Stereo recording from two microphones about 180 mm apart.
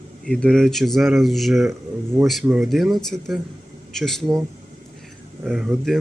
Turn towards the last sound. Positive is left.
turn(degrees=0)  # may be behind; listen again after turning